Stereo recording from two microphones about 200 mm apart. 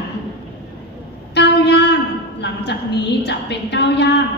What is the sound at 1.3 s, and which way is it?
A woman's voice, 55° left (ahead or behind).